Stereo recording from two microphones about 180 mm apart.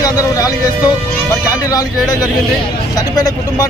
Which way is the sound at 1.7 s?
20° left (ahead or behind).